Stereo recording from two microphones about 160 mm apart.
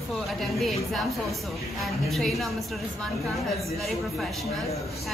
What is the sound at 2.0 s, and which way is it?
Speech, centre (ahead or behind).